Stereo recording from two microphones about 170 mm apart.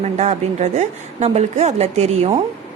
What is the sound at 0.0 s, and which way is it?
A woman's voice, 40° right (ahead or behind).